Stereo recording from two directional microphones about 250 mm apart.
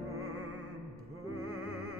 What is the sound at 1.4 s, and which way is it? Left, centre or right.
Music, right.